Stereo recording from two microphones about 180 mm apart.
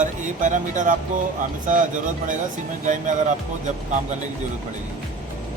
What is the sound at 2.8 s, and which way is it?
Speech, 45° right (ahead or behind).